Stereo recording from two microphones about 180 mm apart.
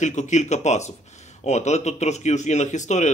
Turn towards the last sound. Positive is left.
turn(degrees=40)  # may be behind; listen again after turning